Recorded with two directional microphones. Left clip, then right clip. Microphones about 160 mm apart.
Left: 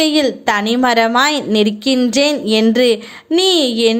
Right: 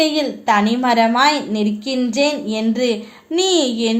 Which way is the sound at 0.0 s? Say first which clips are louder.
Left 4 dB; 35° left (ahead or behind).